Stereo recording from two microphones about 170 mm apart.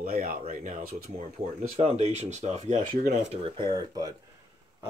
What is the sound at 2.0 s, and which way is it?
Speech, 40° right (ahead or behind).